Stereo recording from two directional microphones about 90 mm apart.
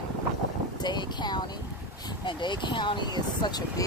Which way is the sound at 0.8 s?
55° left (ahead or behind).